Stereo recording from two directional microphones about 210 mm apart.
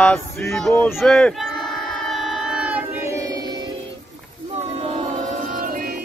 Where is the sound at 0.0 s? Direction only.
5° left (ahead or behind); by 3.7 s 20° right (ahead or behind).